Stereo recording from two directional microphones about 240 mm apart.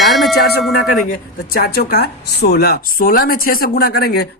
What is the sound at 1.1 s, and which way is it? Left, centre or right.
Speech, left.